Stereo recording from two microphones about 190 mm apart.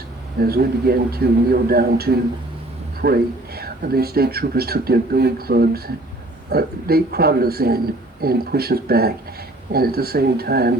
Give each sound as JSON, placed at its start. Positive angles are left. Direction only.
{"t": 0.3, "sound": "speech", "side_deg": -55}